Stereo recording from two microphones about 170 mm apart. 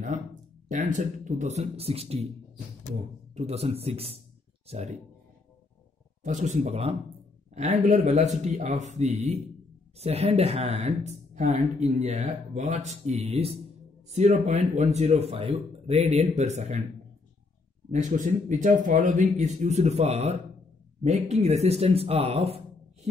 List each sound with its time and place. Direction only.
0.7 s speech: 50° right (ahead or behind)
3.3 s speech: 40° right (ahead or behind)
6.2 s a man's voice: 45° right (ahead or behind)
17.9 s a man's voice: 50° right (ahead or behind)